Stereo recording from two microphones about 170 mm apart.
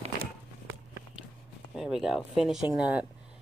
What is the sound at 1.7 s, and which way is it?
Speech, 5° right (ahead or behind).